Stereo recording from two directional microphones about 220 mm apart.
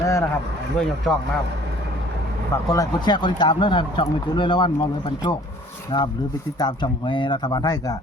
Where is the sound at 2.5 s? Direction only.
15° left (ahead or behind).